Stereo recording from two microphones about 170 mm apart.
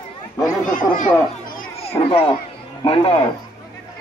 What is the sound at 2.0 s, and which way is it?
Speech, 30° left (ahead or behind).